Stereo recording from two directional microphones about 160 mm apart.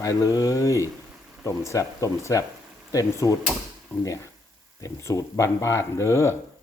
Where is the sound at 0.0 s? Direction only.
20° left (ahead or behind).